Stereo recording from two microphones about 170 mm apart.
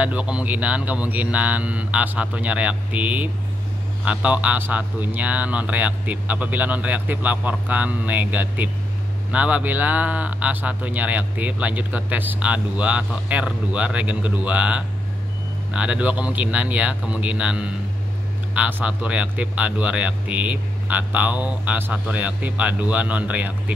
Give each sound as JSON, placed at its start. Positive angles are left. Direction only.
{"t": 0.0, "sound": "a man's voice", "side_deg": -5}